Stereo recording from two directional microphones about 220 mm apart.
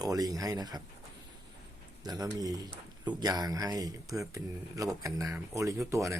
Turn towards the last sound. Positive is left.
turn(degrees=-15)  # may be behind; listen again after turning